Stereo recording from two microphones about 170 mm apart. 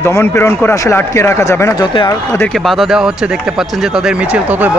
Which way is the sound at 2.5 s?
Centre (ahead or behind).